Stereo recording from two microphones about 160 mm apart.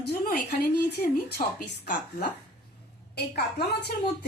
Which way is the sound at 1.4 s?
60° left (ahead or behind).